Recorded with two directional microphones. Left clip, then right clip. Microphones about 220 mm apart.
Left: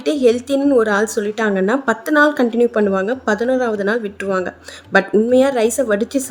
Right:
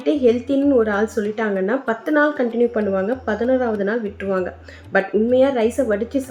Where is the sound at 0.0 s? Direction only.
55° left (ahead or behind).